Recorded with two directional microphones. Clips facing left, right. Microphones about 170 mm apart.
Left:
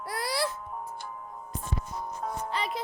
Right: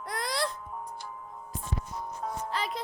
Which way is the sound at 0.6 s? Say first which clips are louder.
Left 1 dB; 50° left (ahead or behind).